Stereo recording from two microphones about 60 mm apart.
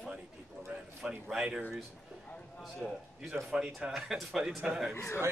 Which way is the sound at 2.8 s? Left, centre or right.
Centre.